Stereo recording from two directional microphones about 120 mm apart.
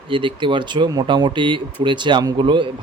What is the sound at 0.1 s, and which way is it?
Speech, 45° right (ahead or behind).